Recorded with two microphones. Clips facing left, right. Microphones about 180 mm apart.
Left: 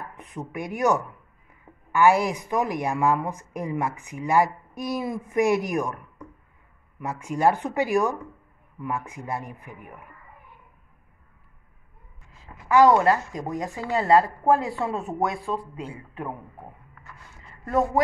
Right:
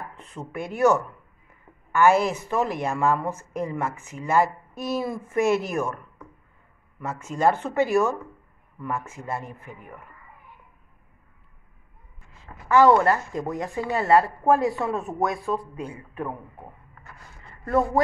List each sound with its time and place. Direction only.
0.2 s a woman's voice: 15° left (ahead or behind)
7.0 s a woman's voice: 15° left (ahead or behind)
12.6 s a woman's voice: 15° left (ahead or behind)
17.6 s a woman's voice: 15° left (ahead or behind)